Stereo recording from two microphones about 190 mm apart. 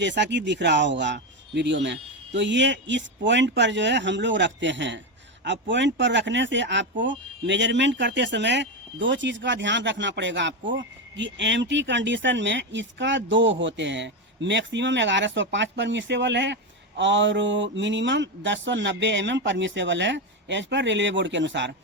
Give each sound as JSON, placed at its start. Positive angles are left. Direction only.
{"t": 0.0, "sound": "speech", "side_deg": -70}